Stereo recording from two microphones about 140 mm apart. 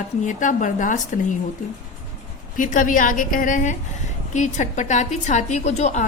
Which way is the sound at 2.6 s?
65° left (ahead or behind).